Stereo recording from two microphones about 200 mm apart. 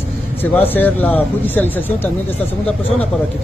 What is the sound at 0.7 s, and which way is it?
Speech, 10° left (ahead or behind).